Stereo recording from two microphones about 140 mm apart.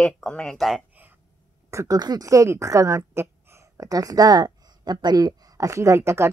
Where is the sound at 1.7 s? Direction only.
25° right (ahead or behind).